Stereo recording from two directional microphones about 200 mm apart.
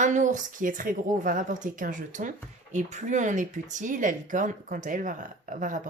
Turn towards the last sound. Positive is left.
turn(degrees=-40)  # may be behind; listen again after turning